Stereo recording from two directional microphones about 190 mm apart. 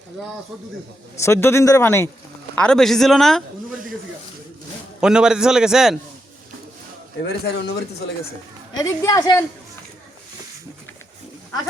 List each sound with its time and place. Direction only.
1.2 s a man's voice: 15° left (ahead or behind)
4.9 s a man's voice: 5° right (ahead or behind)
7.3 s speech: 65° left (ahead or behind)
8.7 s a woman's voice: 20° left (ahead or behind)